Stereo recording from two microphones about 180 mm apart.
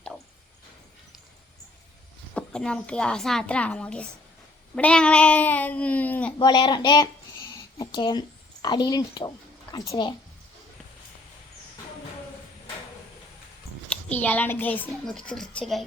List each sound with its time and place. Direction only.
2.3 s a woman's voice: 5° left (ahead or behind)
6.4 s speech: 25° left (ahead or behind)
13.9 s a woman's voice: 10° left (ahead or behind)